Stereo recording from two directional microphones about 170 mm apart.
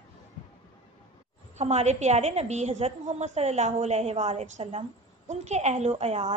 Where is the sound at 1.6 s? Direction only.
40° right (ahead or behind).